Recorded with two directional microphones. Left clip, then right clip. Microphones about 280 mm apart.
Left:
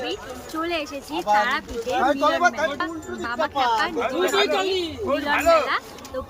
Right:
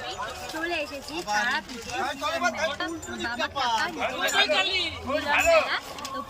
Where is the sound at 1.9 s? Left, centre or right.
Left.